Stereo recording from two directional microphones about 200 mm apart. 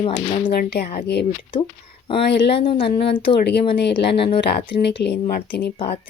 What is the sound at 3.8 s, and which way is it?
Speech, 55° left (ahead or behind).